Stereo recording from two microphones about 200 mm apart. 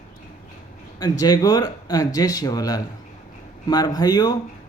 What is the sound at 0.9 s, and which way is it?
A man's voice, 20° left (ahead or behind).